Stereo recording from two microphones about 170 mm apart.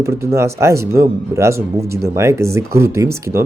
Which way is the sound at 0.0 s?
15° right (ahead or behind).